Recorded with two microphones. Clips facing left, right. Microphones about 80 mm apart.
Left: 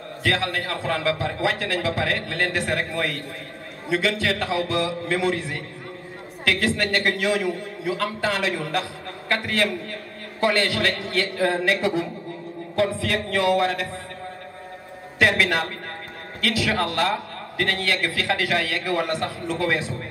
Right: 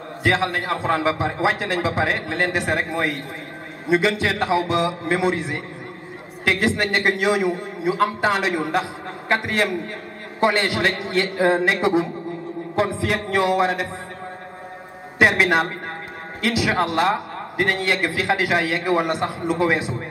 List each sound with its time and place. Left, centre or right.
0.2 s a man's voice: right
15.1 s a man's voice: right